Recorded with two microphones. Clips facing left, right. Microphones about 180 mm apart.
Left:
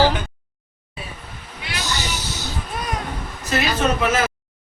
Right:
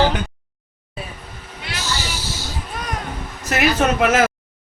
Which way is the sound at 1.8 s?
20° left (ahead or behind).